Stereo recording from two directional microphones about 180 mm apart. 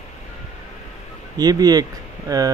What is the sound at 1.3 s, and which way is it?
Speech, 20° right (ahead or behind).